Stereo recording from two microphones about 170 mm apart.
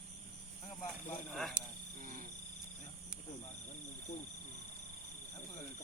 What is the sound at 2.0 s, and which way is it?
Cricket, 55° right (ahead or behind).